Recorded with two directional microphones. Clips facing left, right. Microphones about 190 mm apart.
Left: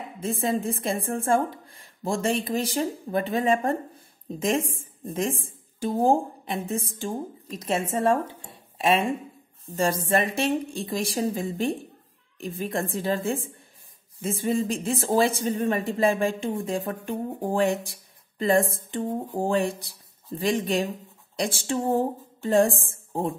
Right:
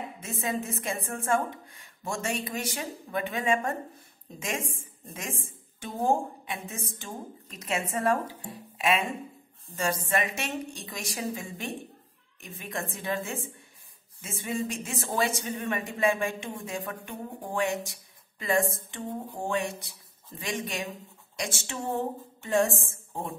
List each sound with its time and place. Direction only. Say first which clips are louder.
0.4 s a woman's voice: left 4 dB; 30° left (ahead or behind)
14.5 s speech: left 5 dB; 35° left (ahead or behind)
19.0 s speech: left 6 dB; 45° left (ahead or behind)